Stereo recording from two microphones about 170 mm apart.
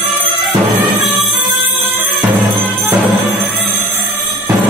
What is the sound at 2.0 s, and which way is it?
Music, 10° right (ahead or behind).